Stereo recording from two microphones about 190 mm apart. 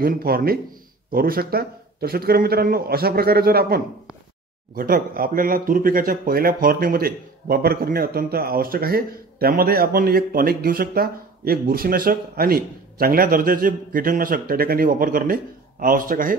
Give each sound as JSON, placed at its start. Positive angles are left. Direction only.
{"t": 0.0, "sound": "speech", "side_deg": -50}